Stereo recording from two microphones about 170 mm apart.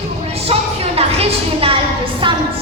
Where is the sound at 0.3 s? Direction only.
35° right (ahead or behind).